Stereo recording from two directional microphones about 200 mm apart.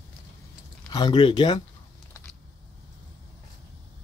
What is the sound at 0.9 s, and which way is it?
Speech, 20° left (ahead or behind).